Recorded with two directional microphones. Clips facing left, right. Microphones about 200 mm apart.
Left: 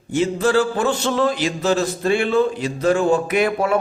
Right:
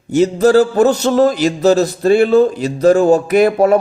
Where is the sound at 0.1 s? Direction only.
40° right (ahead or behind).